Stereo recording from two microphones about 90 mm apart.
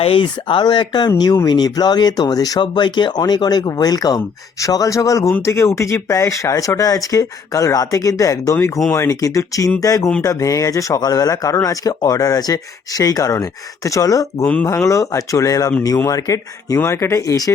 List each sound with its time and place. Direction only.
0.0 s speech: 75° left (ahead or behind); by 2.6 s 45° left (ahead or behind)
2.6 s speech: 55° left (ahead or behind); by 17.5 s 40° left (ahead or behind)